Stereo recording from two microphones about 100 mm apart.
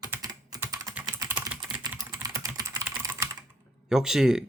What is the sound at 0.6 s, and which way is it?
Typing, 35° right (ahead or behind).